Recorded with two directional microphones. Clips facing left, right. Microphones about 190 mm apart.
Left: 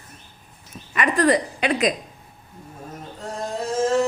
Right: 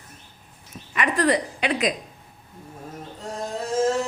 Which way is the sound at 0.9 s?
45° left (ahead or behind).